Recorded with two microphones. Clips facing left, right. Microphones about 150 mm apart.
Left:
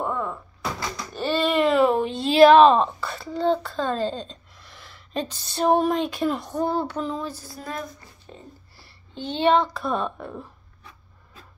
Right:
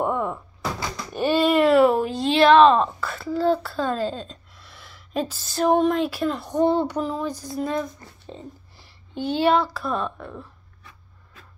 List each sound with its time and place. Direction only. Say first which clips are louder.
0.0 s door: right 3 dB; 15° right (ahead or behind)
2.5 s a woman's voice: even; 5° left (ahead or behind)
6.5 s speech: right 5 dB; 20° right (ahead or behind)
7.0 s a sound: right 3 dB; 10° right (ahead or behind)
7.5 s speech: right 8 dB; 25° right (ahead or behind); by 10.3 s 5° left (ahead or behind)